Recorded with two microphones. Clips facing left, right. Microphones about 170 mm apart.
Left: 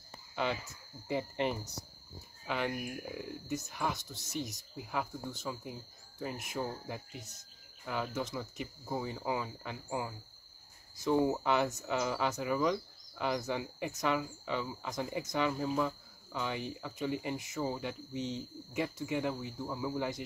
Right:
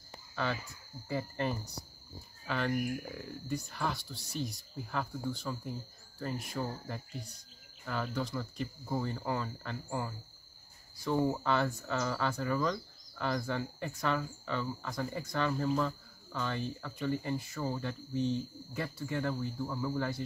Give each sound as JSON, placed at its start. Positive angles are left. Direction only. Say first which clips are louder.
{"t": 1.0, "sound": "speech", "louder": "left 1 dB", "side_deg": 20}
{"t": 8.5, "sound": "speech", "louder": "right 3 dB", "side_deg": 10}